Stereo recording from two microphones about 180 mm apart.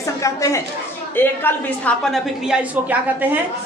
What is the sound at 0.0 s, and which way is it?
A woman's voice, 15° left (ahead or behind).